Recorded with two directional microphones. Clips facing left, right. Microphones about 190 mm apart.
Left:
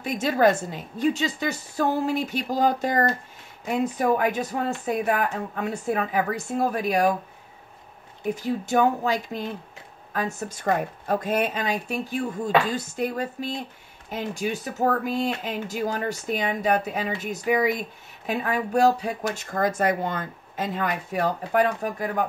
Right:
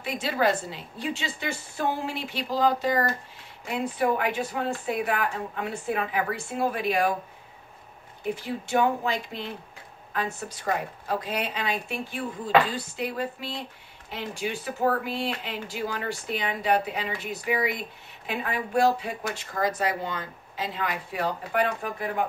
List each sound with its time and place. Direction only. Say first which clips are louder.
0.0 s speech: left 5 dB; 45° left (ahead or behind)
8.4 s speech: left 3 dB; 40° left (ahead or behind)